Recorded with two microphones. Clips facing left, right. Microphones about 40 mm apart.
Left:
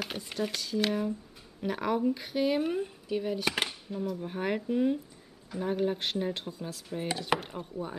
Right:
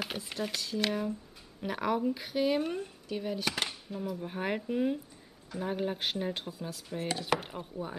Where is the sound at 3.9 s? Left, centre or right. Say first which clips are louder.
Left 2 dB; centre.